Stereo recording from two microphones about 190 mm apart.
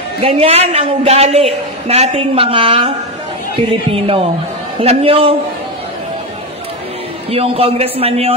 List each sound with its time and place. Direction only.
0.2 s a woman's voice: 30° right (ahead or behind)
7.2 s a woman's voice: 30° right (ahead or behind)